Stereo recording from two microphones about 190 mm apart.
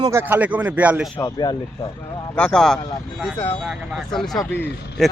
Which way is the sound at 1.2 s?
20° left (ahead or behind).